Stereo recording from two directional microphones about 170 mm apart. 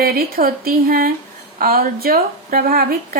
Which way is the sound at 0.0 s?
60° right (ahead or behind).